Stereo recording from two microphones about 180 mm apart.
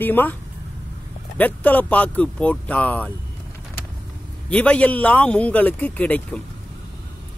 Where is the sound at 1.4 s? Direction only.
10° left (ahead or behind).